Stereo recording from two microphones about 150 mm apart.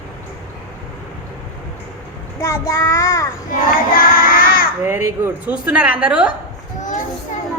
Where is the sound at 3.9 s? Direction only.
70° left (ahead or behind).